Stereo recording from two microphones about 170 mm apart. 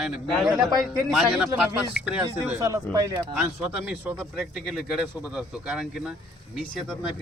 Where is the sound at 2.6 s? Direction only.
20° right (ahead or behind).